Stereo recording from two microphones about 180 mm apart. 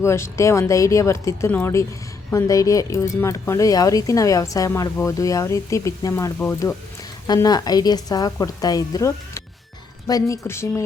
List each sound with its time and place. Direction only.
0.0 s speech: 15° left (ahead or behind)
7.3 s a woman's voice: 20° left (ahead or behind)